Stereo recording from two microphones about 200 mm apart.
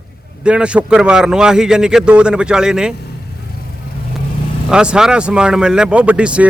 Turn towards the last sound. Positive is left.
turn(degrees=-5)  # may be behind; listen again after turning